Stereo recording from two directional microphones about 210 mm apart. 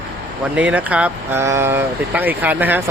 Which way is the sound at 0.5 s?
5° right (ahead or behind).